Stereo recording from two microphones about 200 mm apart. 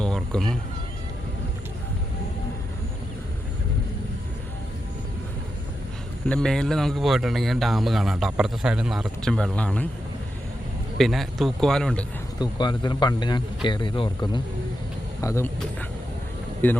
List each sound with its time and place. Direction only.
0.0 s a sound: 5° left (ahead or behind)
6.2 s speech: 5° left (ahead or behind)
10.9 s speech: centre (ahead or behind)
12.4 s speech: 20° left (ahead or behind)
15.2 s speech: 15° left (ahead or behind)